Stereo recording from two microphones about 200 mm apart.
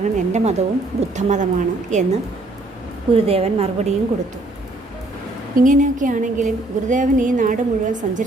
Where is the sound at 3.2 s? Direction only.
30° right (ahead or behind).